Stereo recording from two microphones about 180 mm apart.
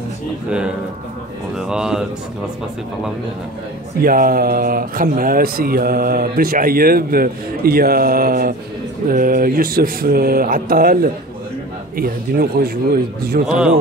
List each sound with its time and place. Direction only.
1.7 s speech: 5° right (ahead or behind)
4.0 s speech: 55° right (ahead or behind)